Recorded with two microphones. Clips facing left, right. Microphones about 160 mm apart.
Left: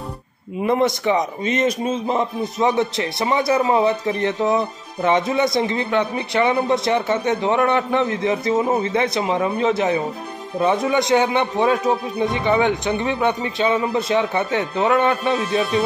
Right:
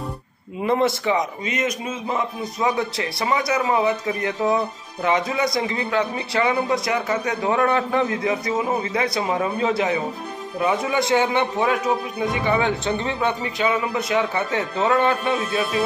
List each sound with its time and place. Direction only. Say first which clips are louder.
0.7 s speech: left 2 dB; 20° left (ahead or behind)